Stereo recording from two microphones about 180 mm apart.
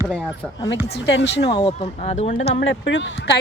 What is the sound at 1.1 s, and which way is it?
Speech, 75° left (ahead or behind).